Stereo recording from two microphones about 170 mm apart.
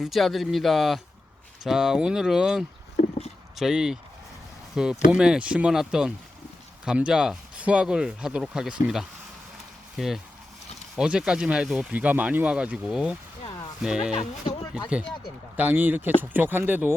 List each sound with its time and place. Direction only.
0.0 s speech: centre (ahead or behind)
14.1 s speech: 30° left (ahead or behind)
15.5 s speech: 10° right (ahead or behind)